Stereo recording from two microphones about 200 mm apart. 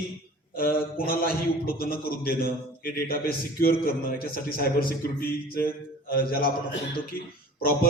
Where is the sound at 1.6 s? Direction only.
50° left (ahead or behind).